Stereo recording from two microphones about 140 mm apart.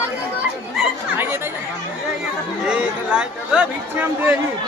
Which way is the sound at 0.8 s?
Centre (ahead or behind).